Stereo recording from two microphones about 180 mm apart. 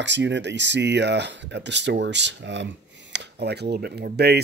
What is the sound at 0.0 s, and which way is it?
Speech, 80° right.